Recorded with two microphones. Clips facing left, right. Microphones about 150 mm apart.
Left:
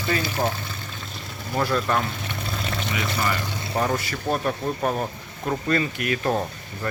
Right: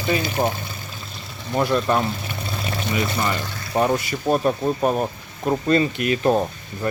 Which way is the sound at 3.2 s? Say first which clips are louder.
Right 1 dB; 20° right (ahead or behind).